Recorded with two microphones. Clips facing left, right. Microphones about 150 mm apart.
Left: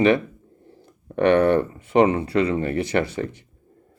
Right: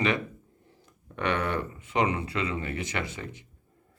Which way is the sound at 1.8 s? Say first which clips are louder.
Left 9 dB; 60° left (ahead or behind).